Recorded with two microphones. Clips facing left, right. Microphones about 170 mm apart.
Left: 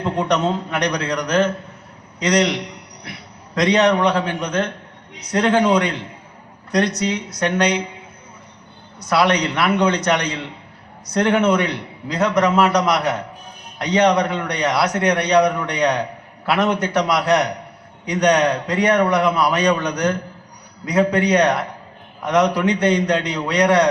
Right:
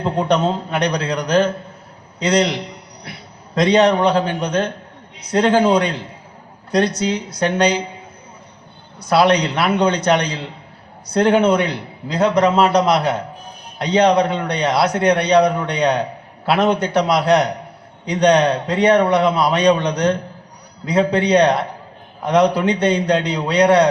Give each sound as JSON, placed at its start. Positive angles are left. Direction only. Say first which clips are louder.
{"t": 0.0, "sound": "a man's voice", "louder": "right 2 dB", "side_deg": -30}
{"t": 9.0, "sound": "a man's voice", "louder": "right 3 dB", "side_deg": -30}